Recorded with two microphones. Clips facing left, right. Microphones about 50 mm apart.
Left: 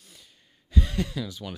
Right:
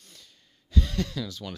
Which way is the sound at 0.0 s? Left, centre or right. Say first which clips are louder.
Even; centre.